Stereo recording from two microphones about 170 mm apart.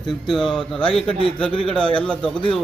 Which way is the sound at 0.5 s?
30° left (ahead or behind).